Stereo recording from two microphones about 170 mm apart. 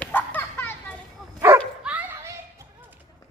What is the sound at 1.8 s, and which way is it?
Dog, 10° right (ahead or behind).